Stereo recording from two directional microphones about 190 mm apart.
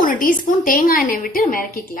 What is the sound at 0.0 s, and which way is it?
A woman's voice, 45° left (ahead or behind).